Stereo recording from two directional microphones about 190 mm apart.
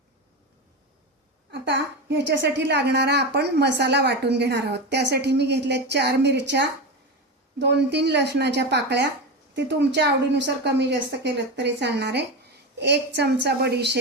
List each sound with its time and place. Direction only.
1.5 s a woman's voice: 65° right (ahead or behind)